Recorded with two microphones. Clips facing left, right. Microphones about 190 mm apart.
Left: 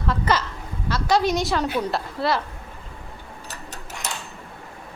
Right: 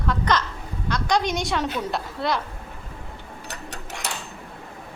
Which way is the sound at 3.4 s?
65° right (ahead or behind).